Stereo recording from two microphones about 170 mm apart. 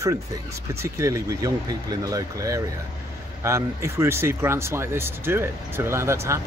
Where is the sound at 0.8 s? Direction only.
15° right (ahead or behind).